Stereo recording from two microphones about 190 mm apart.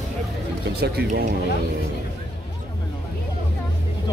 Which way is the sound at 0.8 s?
55° right (ahead or behind).